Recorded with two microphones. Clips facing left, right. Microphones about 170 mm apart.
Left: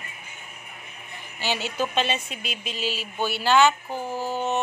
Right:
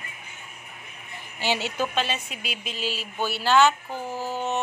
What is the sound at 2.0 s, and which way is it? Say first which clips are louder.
Speech: left 2 dB; 5° right (ahead or behind).